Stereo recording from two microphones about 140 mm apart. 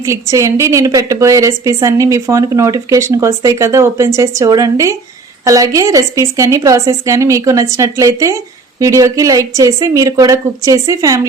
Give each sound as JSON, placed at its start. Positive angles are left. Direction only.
{"t": 0.0, "sound": "a woman's voice", "side_deg": -20}